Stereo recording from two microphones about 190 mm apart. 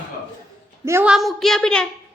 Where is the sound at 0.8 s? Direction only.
10° right (ahead or behind).